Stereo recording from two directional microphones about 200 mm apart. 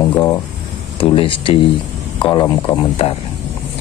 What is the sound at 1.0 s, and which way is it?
Speech, 25° left (ahead or behind).